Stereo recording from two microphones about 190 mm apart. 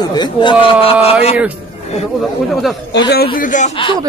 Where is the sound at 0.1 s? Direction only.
25° left (ahead or behind).